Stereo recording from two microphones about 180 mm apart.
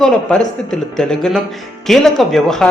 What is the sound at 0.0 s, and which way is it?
Speech, 5° left (ahead or behind).